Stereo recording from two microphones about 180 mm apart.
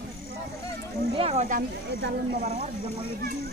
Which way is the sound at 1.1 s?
35° right (ahead or behind).